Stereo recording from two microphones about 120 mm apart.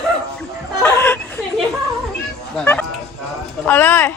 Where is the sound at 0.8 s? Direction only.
15° left (ahead or behind).